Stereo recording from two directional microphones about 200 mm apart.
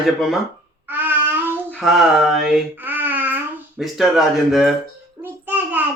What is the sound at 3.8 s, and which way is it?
A child's voice, centre (ahead or behind).